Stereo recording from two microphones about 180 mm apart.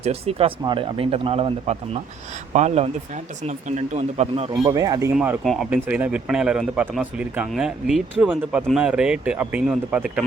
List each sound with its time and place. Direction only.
0.0 s speech: 35° right (ahead or behind)
4.6 s speech: 20° right (ahead or behind)
5.1 s speech: 5° right (ahead or behind)